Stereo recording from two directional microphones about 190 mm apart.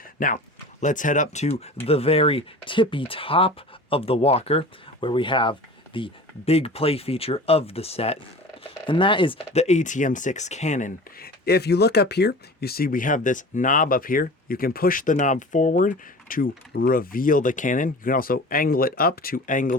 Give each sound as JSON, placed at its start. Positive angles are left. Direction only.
{"t": 0.2, "sound": "speech", "side_deg": 50}